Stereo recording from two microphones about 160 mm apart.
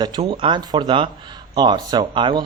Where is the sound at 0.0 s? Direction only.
25° right (ahead or behind).